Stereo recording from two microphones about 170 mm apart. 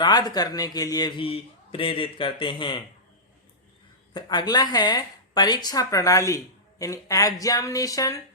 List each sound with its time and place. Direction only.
0.0 s speech: 25° left (ahead or behind)
4.1 s speech: 25° left (ahead or behind)